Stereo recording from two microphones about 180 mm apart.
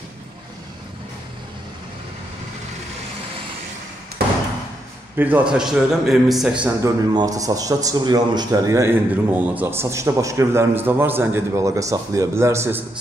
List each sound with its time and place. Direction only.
5.1 s a man's voice: 10° right (ahead or behind)
7.2 s a man's voice: 20° right (ahead or behind)